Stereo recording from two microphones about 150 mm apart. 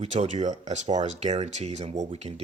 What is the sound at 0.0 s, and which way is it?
Speech, 50° right (ahead or behind).